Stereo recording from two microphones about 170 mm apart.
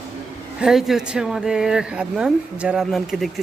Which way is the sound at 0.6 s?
Centre (ahead or behind).